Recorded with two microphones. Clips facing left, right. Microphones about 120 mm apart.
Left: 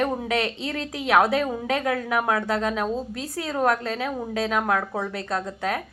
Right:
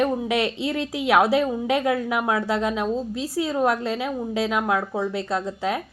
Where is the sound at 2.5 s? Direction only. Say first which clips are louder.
Right 1 dB; 40° left (ahead or behind).